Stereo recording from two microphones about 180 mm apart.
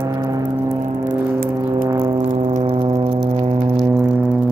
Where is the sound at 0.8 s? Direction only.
45° right (ahead or behind).